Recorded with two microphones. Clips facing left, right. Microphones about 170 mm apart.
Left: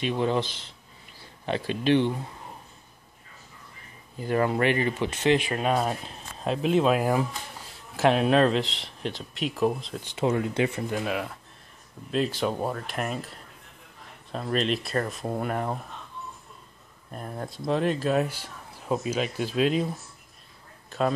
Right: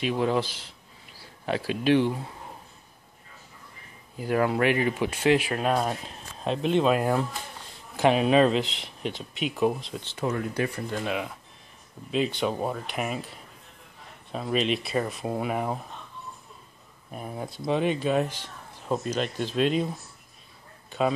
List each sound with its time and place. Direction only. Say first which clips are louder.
0.0 s speech: even; 5° right (ahead or behind)
4.2 s speech: even; 5° right (ahead or behind)
10.0 s speech: left 4 dB; 20° left (ahead or behind)
10.9 s speech: left 1 dB; centre (ahead or behind)
17.1 s speech: even; 5° right (ahead or behind)
20.9 s speech: even; centre (ahead or behind)